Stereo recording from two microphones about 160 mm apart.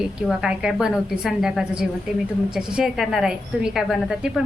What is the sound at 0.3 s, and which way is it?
A woman's voice, 5° right (ahead or behind).